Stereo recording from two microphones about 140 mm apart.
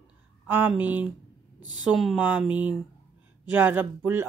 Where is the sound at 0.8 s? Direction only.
10° right (ahead or behind).